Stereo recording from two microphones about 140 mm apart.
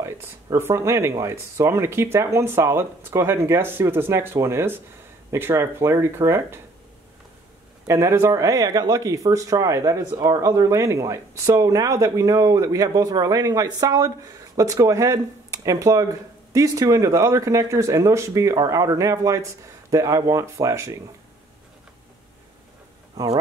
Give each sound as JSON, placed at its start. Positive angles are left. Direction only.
{"t": 0.0, "sound": "speech", "side_deg": -20}
{"t": 7.8, "sound": "speech", "side_deg": -20}